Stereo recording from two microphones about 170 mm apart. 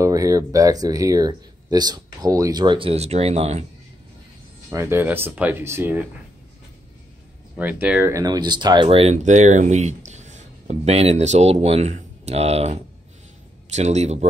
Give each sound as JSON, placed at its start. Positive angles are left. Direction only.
{"t": 0.0, "sound": "speech", "side_deg": -20}
{"t": 4.6, "sound": "speech", "side_deg": -15}
{"t": 7.5, "sound": "speech", "side_deg": -10}
{"t": 9.1, "sound": "speech", "side_deg": -45}
{"t": 13.7, "sound": "speech", "side_deg": -40}